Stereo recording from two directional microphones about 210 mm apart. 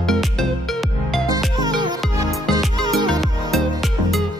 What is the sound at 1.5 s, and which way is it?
Music, 20° right (ahead or behind).